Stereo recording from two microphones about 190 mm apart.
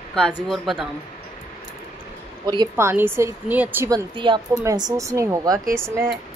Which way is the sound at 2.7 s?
10° right (ahead or behind).